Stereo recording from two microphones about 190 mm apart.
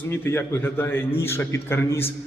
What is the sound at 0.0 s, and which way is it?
A man's voice, 15° left (ahead or behind).